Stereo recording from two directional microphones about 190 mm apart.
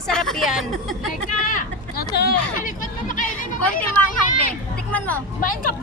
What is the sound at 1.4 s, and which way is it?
Hubbub, 50° left (ahead or behind).